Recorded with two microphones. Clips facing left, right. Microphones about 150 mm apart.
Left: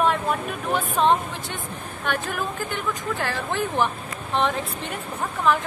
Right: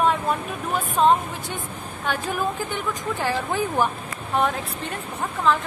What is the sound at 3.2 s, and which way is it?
Speech, 15° right (ahead or behind).